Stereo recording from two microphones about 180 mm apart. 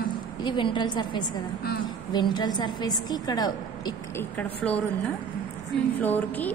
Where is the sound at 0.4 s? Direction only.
25° left (ahead or behind).